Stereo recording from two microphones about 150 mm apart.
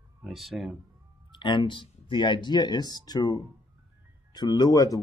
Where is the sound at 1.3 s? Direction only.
35° left (ahead or behind).